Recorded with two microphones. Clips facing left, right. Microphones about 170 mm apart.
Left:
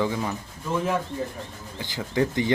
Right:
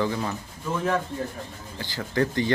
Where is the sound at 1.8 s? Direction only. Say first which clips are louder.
Left 1 dB; 20° left (ahead or behind).